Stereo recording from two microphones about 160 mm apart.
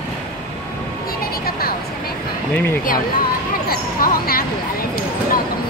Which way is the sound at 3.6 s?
70° left (ahead or behind).